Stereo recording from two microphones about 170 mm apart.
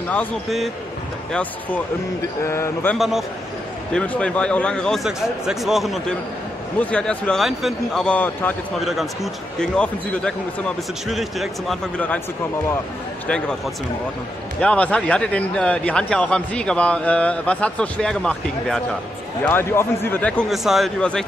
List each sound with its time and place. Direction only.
0.1 s a man's voice: 5° left (ahead or behind)
3.0 s a man's voice: centre (ahead or behind)
8.7 s a man's voice: centre (ahead or behind)
14.6 s speech: 5° left (ahead or behind)